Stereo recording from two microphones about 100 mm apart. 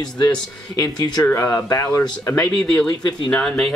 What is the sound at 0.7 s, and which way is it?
Speech, 40° left (ahead or behind).